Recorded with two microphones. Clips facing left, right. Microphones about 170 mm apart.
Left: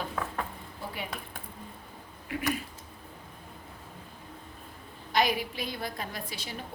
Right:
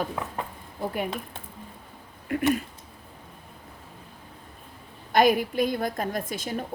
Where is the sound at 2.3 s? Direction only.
45° right (ahead or behind).